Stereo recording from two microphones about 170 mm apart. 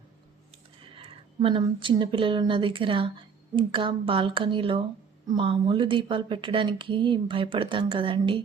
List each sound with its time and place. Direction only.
0.9 s speech: 30° right (ahead or behind)